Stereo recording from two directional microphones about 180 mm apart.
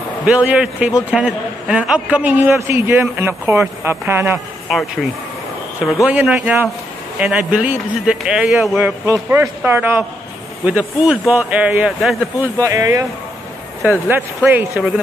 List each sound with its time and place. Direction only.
0.2 s a man's voice: 10° right (ahead or behind)
6.0 s a man's voice: 5° right (ahead or behind)
12.4 s a man's voice: 20° right (ahead or behind)